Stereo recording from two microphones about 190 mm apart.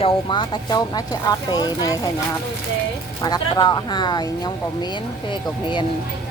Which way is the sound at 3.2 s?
20° left (ahead or behind).